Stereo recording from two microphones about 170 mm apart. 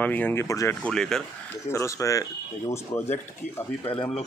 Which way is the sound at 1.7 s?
20° left (ahead or behind).